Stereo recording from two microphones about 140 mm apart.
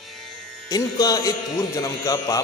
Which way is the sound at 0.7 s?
25° left (ahead or behind).